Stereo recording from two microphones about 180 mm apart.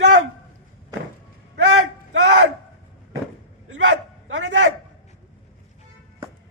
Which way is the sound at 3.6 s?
90° right.